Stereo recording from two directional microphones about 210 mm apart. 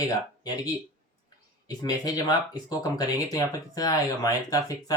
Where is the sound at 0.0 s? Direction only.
20° left (ahead or behind).